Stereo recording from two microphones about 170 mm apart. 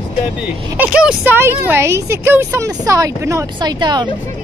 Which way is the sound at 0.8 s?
10° right (ahead or behind).